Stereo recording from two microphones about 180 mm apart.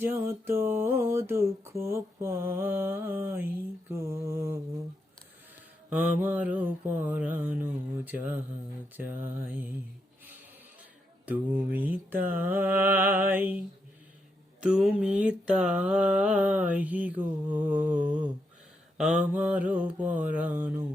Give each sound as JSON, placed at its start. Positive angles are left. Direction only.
{"t": 0.0, "sound": "mantra", "side_deg": -10}
{"t": 5.9, "sound": "mantra", "side_deg": -10}
{"t": 11.7, "sound": "mantra", "side_deg": -10}
{"t": 14.6, "sound": "mantra", "side_deg": -5}